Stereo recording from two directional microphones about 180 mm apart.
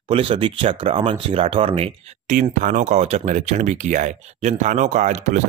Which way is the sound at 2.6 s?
45° right (ahead or behind).